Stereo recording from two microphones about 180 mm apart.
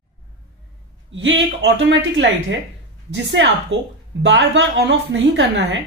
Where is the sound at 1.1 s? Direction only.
90° right.